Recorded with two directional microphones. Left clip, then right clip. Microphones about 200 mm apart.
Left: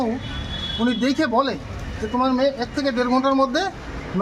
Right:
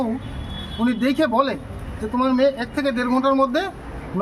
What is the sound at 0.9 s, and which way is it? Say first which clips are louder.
Speech: right 2 dB; 25° right (ahead or behind).